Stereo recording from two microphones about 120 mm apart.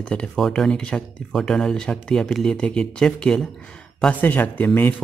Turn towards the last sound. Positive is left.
turn(degrees=15)  # may be behind; listen again after turning